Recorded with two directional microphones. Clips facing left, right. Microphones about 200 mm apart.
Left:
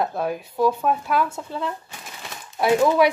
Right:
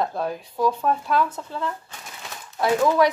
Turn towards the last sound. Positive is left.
turn(degrees=15)  # may be behind; listen again after turning